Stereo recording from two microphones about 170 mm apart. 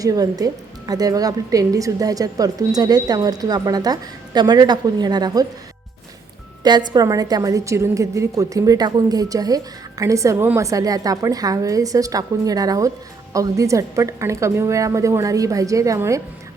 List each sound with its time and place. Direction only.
0.0 s a woman's voice: 20° right (ahead or behind)
6.6 s a woman's voice: 25° right (ahead or behind)